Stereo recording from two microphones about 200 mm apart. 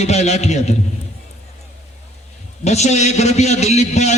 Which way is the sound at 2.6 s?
35° left (ahead or behind).